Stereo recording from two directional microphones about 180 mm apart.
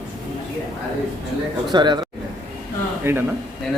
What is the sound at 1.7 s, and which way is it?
Speech, 25° right (ahead or behind).